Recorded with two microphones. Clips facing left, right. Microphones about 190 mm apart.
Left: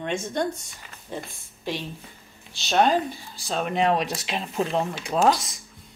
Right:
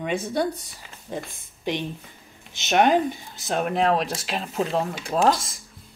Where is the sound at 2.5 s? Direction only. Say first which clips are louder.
Right 2 dB; 20° right (ahead or behind).